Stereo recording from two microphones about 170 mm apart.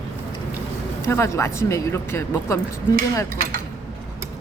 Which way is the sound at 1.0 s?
15° left (ahead or behind).